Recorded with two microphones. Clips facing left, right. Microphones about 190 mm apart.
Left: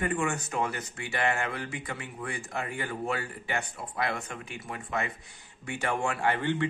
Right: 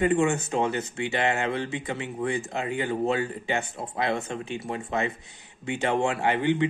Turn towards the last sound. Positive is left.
turn(degrees=-20)  # may be behind; listen again after turning